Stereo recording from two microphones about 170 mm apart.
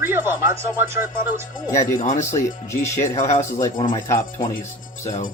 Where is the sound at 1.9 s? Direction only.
50° left (ahead or behind).